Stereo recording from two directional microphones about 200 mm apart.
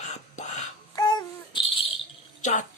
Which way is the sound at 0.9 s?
20° left (ahead or behind).